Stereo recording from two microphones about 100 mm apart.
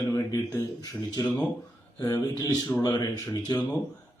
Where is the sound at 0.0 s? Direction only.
40° left (ahead or behind).